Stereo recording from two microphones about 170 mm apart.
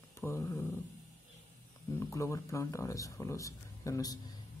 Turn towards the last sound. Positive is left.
turn(degrees=20)  # may be behind; listen again after turning